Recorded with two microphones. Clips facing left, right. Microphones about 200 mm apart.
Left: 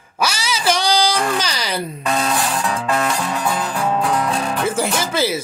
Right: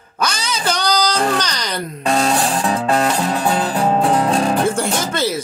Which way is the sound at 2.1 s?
30° right (ahead or behind).